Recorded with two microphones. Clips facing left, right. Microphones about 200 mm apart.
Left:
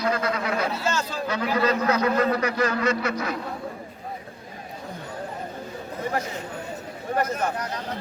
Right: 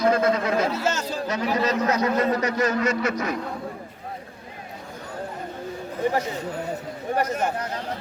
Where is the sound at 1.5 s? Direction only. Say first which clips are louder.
Left 1 dB; 20° right (ahead or behind).